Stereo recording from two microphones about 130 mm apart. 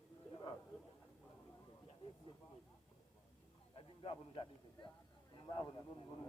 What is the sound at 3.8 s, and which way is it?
A man's voice, 40° left (ahead or behind).